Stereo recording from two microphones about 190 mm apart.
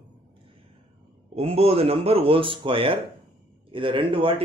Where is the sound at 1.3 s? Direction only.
30° right (ahead or behind).